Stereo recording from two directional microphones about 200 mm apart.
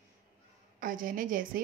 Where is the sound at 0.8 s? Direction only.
45° right (ahead or behind).